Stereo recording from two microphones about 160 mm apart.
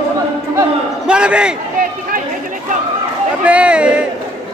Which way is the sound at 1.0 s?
5° right (ahead or behind).